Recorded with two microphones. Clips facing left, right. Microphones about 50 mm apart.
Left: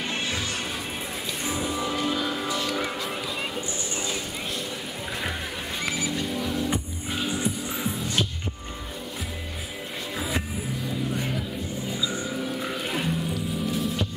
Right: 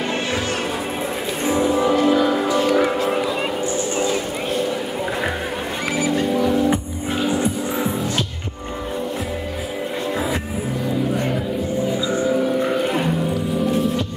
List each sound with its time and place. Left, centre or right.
1.6 s music: right
3.9 s a sound: centre
5.9 s music: right
6.4 s music: centre
7.2 s music: centre
12.1 s music: centre
12.4 s music: centre
13.7 s music: centre